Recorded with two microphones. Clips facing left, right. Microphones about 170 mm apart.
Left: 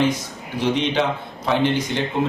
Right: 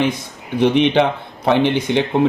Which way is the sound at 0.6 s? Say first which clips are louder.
Right 6 dB; 65° right (ahead or behind).